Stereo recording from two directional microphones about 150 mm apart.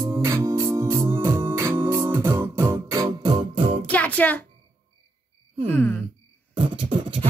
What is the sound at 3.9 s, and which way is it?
Music, 10° left (ahead or behind).